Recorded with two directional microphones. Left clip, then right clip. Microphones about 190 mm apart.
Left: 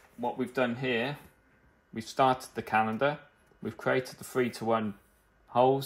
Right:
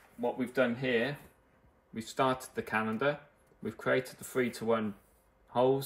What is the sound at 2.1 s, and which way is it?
Speech, 40° left (ahead or behind).